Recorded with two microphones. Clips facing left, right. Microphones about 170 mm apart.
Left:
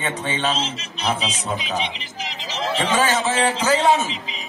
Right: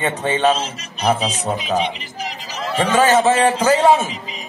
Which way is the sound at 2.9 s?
50° right (ahead or behind).